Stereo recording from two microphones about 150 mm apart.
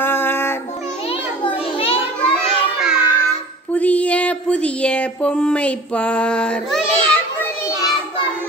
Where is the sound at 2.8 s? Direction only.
5° right (ahead or behind).